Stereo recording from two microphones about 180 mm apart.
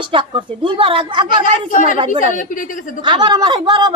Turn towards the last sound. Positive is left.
turn(degrees=-25)  # may be behind; listen again after turning